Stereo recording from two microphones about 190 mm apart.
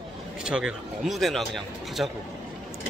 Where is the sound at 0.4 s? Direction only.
5° right (ahead or behind).